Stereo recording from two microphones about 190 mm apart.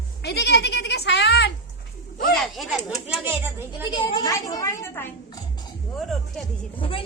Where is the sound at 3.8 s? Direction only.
25° left (ahead or behind).